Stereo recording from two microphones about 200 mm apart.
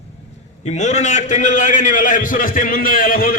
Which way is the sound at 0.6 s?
35° left (ahead or behind).